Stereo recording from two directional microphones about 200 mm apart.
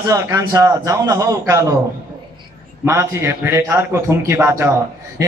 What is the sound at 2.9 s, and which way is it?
A man's voice, 15° right (ahead or behind).